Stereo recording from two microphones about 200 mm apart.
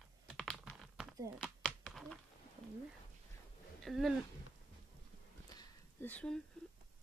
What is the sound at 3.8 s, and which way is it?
Speech, centre (ahead or behind).